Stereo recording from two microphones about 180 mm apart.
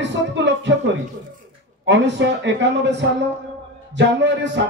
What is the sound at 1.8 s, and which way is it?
Speech, 80° right.